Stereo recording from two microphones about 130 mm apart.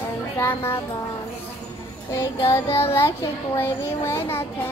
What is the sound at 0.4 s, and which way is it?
Speech, 20° left (ahead or behind).